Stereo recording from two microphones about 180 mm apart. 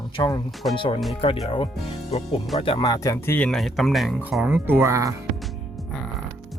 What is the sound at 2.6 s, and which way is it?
Speech, 30° left (ahead or behind).